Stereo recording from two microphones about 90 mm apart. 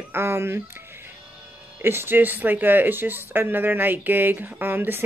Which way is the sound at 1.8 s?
25° right (ahead or behind).